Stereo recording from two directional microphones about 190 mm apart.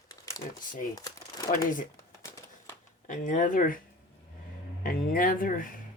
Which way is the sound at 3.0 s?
40° left (ahead or behind).